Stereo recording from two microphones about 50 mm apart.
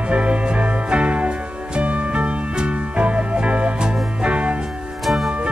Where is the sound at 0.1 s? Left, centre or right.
Right.